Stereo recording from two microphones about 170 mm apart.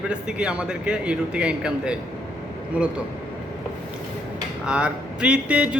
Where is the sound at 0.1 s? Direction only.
5° right (ahead or behind).